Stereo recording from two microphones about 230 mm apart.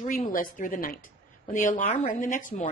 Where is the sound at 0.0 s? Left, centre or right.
Left.